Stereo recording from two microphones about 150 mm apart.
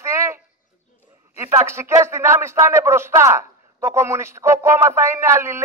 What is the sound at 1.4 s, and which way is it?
Speech, 20° right (ahead or behind).